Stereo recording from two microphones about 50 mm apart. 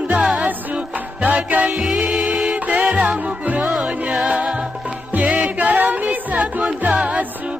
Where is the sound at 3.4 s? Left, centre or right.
Right.